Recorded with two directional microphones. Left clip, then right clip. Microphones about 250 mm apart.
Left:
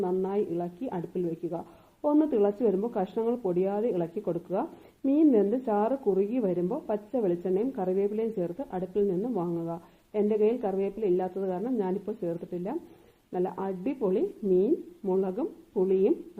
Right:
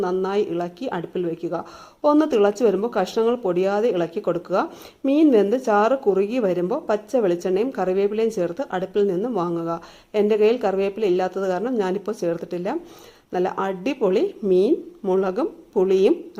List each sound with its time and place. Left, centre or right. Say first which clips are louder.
0.0 s speech: right 7 dB; centre